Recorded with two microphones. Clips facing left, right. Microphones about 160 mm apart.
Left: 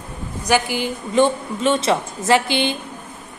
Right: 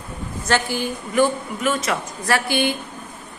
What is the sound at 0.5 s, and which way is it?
Speech, 15° left (ahead or behind).